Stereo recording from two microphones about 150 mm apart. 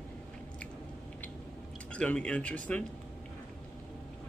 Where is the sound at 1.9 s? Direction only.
5° left (ahead or behind).